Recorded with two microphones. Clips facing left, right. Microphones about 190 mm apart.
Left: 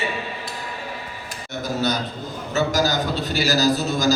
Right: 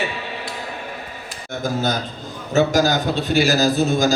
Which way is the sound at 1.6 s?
50° right (ahead or behind).